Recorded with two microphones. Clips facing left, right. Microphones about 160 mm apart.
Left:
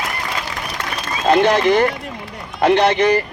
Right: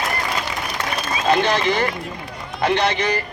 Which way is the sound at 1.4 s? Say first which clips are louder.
Left 6 dB; 55° left (ahead or behind).